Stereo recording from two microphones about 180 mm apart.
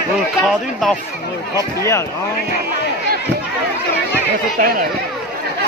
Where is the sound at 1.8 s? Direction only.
15° left (ahead or behind).